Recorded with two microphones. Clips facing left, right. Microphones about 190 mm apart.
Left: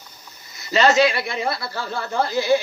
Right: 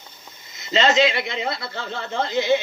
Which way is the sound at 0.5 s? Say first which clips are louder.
Left 2 dB; 20° right (ahead or behind).